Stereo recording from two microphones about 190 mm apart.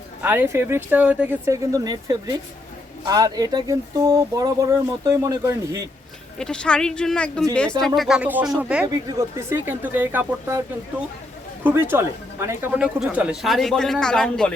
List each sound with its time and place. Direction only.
0.2 s speech: 10° right (ahead or behind)
6.4 s speech: 5° left (ahead or behind)
11.6 s speech: 10° right (ahead or behind)